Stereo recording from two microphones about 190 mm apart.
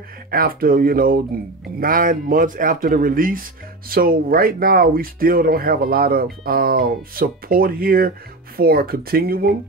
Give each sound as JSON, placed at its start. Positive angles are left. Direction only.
{"t": 0.3, "sound": "speech", "side_deg": -50}